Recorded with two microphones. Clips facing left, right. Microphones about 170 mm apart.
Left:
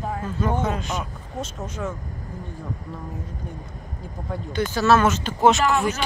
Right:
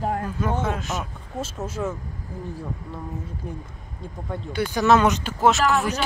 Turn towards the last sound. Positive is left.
turn(degrees=0)  # may be behind; listen again after turning